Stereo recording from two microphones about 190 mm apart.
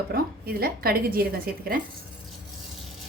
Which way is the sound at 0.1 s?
50° right (ahead or behind).